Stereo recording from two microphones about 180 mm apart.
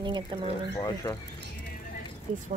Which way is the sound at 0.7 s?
20° left (ahead or behind).